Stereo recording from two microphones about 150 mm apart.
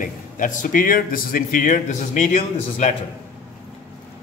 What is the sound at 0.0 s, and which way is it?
Speech, 60° left (ahead or behind).